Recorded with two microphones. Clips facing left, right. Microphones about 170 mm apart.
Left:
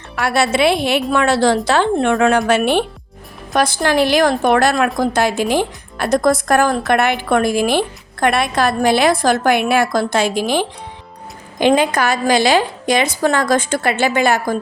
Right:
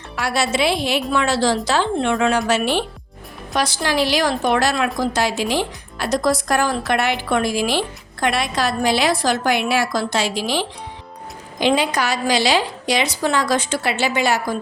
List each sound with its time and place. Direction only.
0.2 s a woman's voice: 60° left (ahead or behind)